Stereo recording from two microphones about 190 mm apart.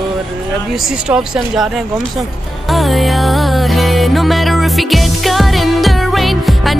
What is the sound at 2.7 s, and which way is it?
Music, centre (ahead or behind).